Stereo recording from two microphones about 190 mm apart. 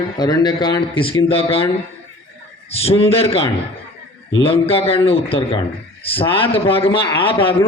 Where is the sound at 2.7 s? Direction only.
30° left (ahead or behind).